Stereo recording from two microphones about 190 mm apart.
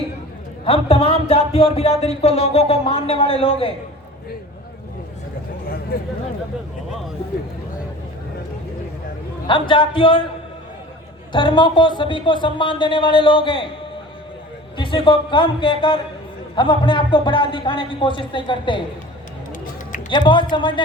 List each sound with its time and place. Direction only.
0.6 s speech: 30° left (ahead or behind)
5.9 s speech: 50° left (ahead or behind)
9.5 s a man's voice: 25° left (ahead or behind)
11.3 s a man's voice: 25° left (ahead or behind)
14.8 s a man's voice: 25° left (ahead or behind)
20.1 s a man's voice: 25° left (ahead or behind)